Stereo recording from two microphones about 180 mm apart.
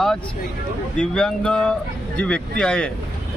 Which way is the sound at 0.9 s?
5° left (ahead or behind).